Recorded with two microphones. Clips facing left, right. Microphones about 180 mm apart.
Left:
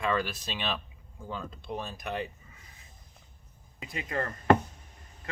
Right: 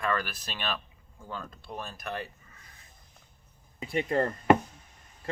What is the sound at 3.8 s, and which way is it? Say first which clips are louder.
Speech: right 7 dB; 30° right (ahead or behind).